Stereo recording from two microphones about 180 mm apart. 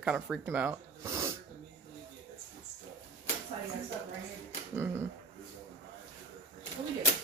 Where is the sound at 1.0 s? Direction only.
15° right (ahead or behind).